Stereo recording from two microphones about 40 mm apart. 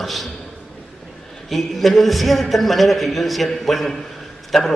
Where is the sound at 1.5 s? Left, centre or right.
Centre.